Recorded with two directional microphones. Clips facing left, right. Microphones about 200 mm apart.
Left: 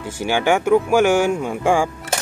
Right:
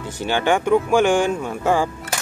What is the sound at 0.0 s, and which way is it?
Speech, 10° left (ahead or behind).